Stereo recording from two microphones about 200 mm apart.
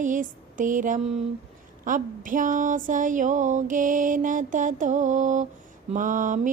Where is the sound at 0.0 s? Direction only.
40° right (ahead or behind).